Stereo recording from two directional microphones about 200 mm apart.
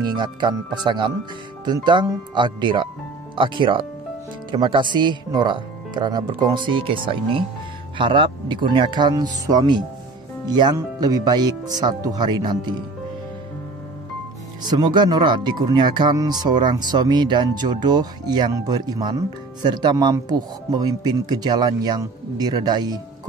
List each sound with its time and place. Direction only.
0.0 s speech: 20° right (ahead or behind)
14.6 s speech: 20° right (ahead or behind)